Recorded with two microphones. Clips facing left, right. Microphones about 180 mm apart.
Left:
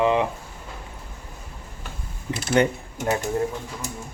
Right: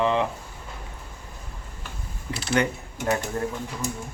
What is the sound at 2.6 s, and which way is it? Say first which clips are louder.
Speech: left 5 dB; 25° left (ahead or behind).